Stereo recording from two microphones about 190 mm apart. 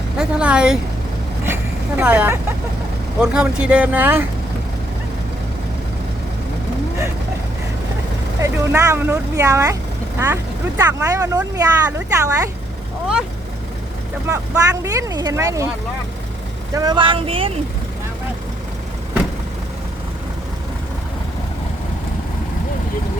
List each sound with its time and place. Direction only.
0.2 s speech: 5° right (ahead or behind)
2.0 s speech: 5° right (ahead or behind)
8.4 s speech: 15° right (ahead or behind)
14.3 s speech: 15° right (ahead or behind)
16.7 s speech: 20° right (ahead or behind)